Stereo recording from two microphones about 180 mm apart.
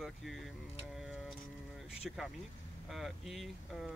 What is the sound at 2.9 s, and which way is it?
Speech, centre (ahead or behind).